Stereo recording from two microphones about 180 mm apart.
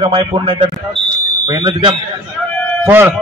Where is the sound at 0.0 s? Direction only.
30° right (ahead or behind).